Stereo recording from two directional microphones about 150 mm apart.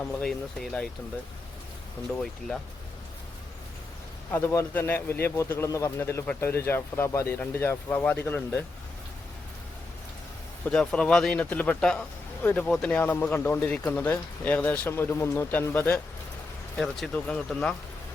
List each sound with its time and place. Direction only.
0.0 s speech: 5° left (ahead or behind)
4.3 s speech: 15° left (ahead or behind)
10.7 s speech: 5° left (ahead or behind)
16.7 s speech: 5° left (ahead or behind)